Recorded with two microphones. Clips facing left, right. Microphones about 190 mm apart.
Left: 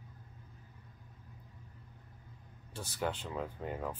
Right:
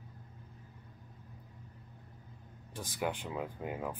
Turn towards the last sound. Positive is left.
turn(degrees=-10)  # may be behind; listen again after turning